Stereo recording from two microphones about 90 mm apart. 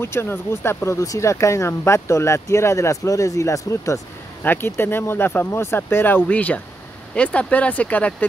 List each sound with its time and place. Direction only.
0.0 s speech: 25° left (ahead or behind)
4.4 s speech: 25° left (ahead or behind)